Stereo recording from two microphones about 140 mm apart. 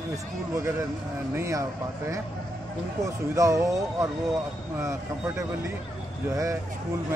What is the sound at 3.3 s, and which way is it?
Speech, 25° right (ahead or behind).